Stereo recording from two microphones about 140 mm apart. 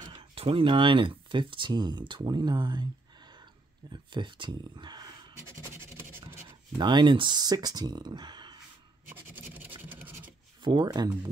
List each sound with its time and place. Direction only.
0.0 s speech: 40° right (ahead or behind)
3.9 s speech: 35° right (ahead or behind)
5.8 s scratch: 20° right (ahead or behind)
6.8 s speech: 30° right (ahead or behind)
9.1 s scratch: 15° right (ahead or behind)
10.6 s speech: 35° right (ahead or behind)